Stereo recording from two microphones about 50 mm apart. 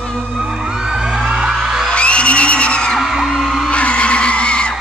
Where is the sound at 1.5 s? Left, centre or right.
Centre.